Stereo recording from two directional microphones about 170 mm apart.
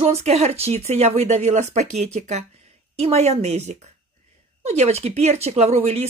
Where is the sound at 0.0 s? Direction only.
40° right (ahead or behind).